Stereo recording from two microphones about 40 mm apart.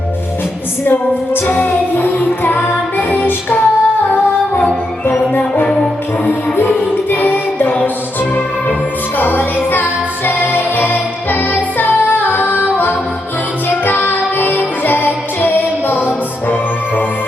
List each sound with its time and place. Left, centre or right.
0.9 s music: left
6.2 s music: left
9.1 s music: left